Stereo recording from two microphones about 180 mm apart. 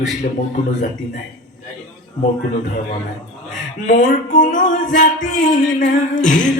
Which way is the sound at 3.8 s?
45° left (ahead or behind).